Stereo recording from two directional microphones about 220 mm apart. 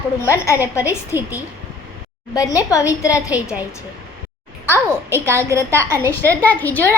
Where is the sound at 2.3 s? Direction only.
15° left (ahead or behind).